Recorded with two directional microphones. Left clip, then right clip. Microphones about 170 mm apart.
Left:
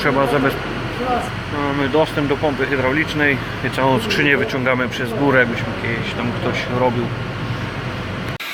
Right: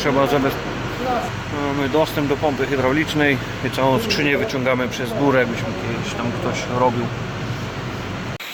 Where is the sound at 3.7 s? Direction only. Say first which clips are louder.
Left 1 dB; 5° right (ahead or behind).